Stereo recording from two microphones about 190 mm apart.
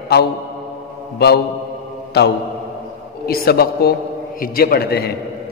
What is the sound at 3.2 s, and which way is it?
A man's voice, 55° left (ahead or behind).